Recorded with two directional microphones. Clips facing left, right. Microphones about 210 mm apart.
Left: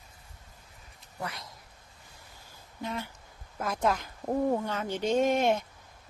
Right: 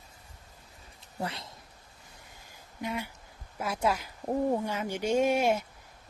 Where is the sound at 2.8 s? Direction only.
10° right (ahead or behind).